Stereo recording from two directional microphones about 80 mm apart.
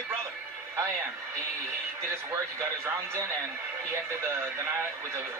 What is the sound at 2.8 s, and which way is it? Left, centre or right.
Speech, right.